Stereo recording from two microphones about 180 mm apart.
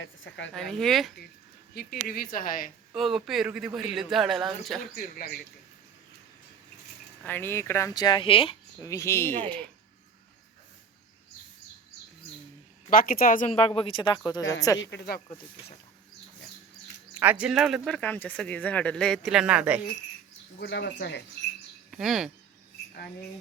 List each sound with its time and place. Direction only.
0.0 s a woman's voice: 90° left
0.5 s speech: centre (ahead or behind)
1.7 s a woman's voice: 60° left (ahead or behind)
2.9 s speech: centre (ahead or behind)
4.9 s a woman's voice: 50° left (ahead or behind)
7.3 s speech: 10° left (ahead or behind); by 8.5 s 30° left (ahead or behind)
8.8 s speech: 15° left (ahead or behind)
12.9 s a woman's voice: 50° left (ahead or behind)
13.5 s speech: 30° left (ahead or behind)
14.8 s speech: 75° left (ahead or behind)
17.2 s speech: 10° right (ahead or behind)
20.6 s speech: 70° left (ahead or behind)
21.8 s speech: centre (ahead or behind)